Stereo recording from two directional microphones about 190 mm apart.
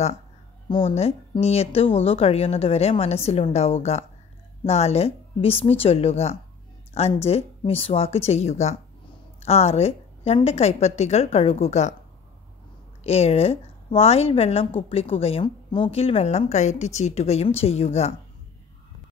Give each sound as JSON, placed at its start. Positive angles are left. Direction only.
{"t": 0.7, "sound": "a woman's voice", "side_deg": 30}
{"t": 13.0, "sound": "a woman's voice", "side_deg": 35}